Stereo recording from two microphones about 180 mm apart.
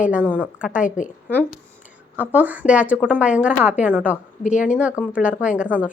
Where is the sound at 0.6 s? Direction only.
5° right (ahead or behind).